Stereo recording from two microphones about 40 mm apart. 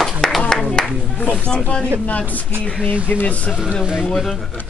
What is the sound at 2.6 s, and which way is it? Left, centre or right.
Speech, left.